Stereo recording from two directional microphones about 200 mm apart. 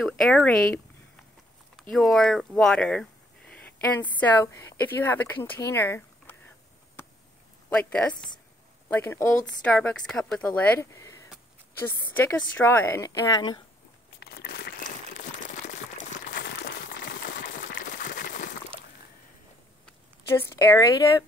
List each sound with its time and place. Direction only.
0.0 s speech: 5° left (ahead or behind)
1.8 s speech: centre (ahead or behind)
7.7 s speech: 5° left (ahead or behind)
14.2 s crumpling: 55° left (ahead or behind)
16.3 s a sound: 55° left (ahead or behind)
19.9 s speech: 15° left (ahead or behind)